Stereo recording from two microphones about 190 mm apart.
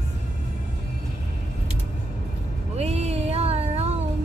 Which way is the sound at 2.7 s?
35° right (ahead or behind).